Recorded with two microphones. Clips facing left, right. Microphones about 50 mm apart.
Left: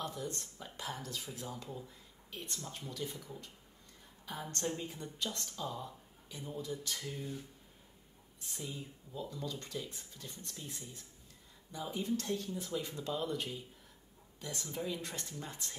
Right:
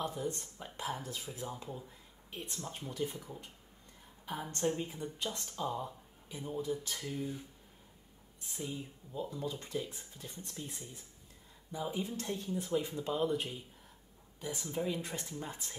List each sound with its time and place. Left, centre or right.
0.0 s speech: centre
8.6 s speech: right